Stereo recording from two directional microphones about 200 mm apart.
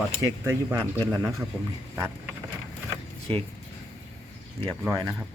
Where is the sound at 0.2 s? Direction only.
15° right (ahead or behind).